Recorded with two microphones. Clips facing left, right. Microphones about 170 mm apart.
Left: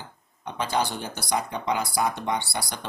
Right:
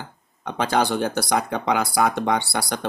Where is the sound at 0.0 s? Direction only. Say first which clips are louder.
Right 4 dB; 70° right (ahead or behind).